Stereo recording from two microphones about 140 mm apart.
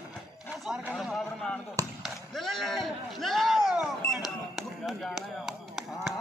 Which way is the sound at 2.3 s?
Centre (ahead or behind).